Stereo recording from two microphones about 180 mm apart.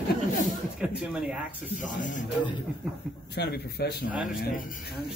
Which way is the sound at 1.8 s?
45° left (ahead or behind).